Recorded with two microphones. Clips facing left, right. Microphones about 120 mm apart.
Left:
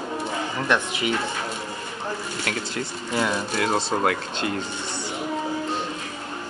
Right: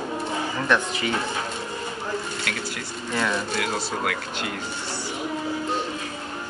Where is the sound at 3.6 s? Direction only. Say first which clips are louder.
Left 4 dB; 30° left (ahead or behind).